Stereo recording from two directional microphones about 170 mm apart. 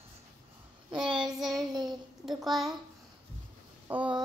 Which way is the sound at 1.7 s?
25° right (ahead or behind).